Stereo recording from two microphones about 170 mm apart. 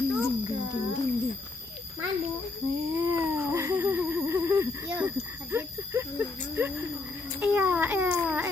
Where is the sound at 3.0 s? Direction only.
15° right (ahead or behind).